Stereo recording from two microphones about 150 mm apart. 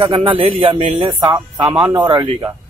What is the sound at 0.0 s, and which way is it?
Speech, 35° right (ahead or behind).